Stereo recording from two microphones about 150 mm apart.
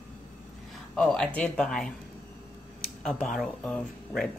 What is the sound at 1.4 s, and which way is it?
Speech, 5° left (ahead or behind).